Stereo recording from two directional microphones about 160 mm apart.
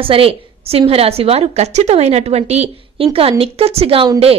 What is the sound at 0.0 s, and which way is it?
A woman's voice, 35° right (ahead or behind).